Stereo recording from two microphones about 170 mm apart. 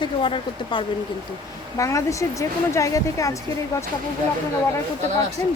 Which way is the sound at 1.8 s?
20° left (ahead or behind).